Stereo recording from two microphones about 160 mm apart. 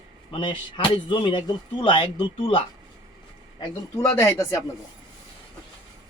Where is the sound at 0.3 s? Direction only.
30° left (ahead or behind).